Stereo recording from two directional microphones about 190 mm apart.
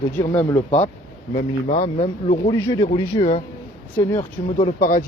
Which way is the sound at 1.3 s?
40° left (ahead or behind).